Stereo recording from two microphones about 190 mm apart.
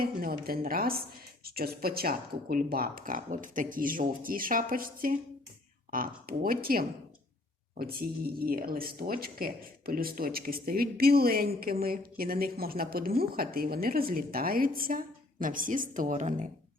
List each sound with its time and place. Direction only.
0.0 s speech: 50° right (ahead or behind)